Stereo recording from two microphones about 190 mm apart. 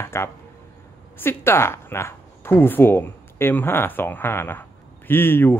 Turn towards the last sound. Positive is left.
turn(degrees=10)  # may be behind; listen again after turning